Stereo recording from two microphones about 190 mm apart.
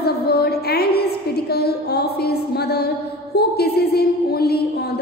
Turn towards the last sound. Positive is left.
turn(degrees=55)  # may be behind; listen again after turning